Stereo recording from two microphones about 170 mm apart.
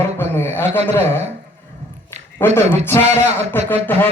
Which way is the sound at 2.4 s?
10° left (ahead or behind).